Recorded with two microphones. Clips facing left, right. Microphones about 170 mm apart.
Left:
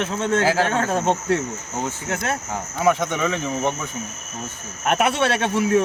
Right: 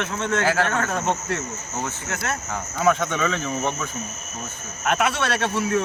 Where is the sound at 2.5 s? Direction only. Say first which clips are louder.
Even; 10° left (ahead or behind).